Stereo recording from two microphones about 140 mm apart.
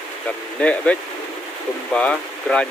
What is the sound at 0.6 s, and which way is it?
Speech, 10° left (ahead or behind).